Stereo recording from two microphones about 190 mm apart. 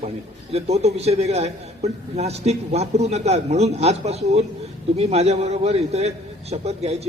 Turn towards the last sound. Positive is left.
turn(degrees=-35)  # may be behind; listen again after turning